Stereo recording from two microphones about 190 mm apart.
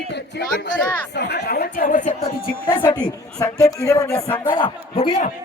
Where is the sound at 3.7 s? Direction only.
15° left (ahead or behind).